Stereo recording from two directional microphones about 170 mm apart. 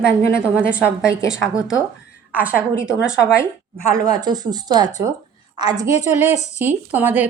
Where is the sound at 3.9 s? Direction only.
20° right (ahead or behind).